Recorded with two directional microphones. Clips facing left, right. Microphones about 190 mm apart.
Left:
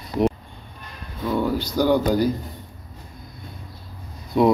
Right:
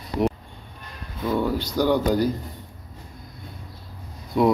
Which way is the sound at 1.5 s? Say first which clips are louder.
Left 2 dB; 5° left (ahead or behind).